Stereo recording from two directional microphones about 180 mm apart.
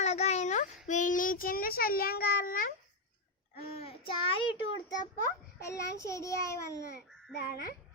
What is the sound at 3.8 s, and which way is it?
Child singing, 35° left (ahead or behind).